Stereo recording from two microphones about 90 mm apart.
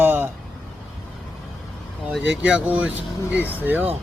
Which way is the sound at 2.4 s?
15° right (ahead or behind).